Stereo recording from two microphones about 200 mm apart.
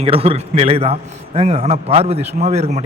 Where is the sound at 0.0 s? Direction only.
30° right (ahead or behind).